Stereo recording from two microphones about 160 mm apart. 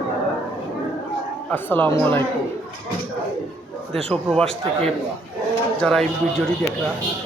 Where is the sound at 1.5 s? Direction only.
10° left (ahead or behind).